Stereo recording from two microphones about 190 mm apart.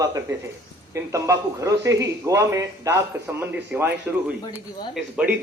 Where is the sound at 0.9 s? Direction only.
15° right (ahead or behind).